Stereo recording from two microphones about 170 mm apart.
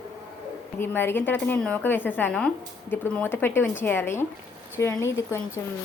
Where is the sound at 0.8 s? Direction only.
15° left (ahead or behind).